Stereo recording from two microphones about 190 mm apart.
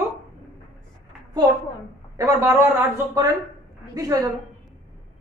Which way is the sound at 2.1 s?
15° right (ahead or behind).